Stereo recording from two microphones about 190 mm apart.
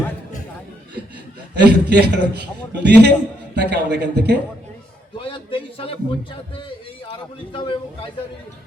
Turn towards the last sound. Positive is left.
turn(degrees=25)  # may be behind; listen again after turning